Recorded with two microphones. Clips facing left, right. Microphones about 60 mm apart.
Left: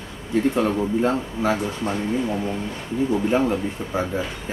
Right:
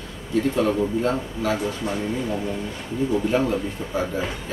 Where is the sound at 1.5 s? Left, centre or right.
Left.